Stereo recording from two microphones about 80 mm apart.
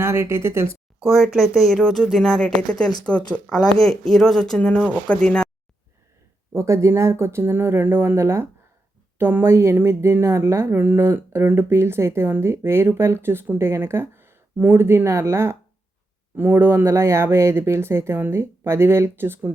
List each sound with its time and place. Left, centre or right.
0.0 s speech: right
1.0 s speech: centre
6.5 s speech: right